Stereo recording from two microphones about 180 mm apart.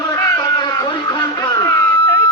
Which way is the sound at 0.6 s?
20° left (ahead or behind).